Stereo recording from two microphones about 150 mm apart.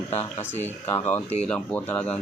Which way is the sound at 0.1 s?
45° left (ahead or behind).